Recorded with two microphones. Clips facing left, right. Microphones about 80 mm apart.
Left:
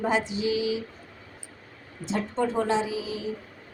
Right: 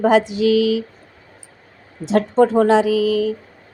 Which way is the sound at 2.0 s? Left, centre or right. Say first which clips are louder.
Right 12 dB; right.